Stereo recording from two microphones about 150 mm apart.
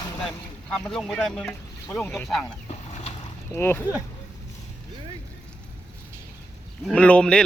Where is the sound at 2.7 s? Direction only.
45° left (ahead or behind).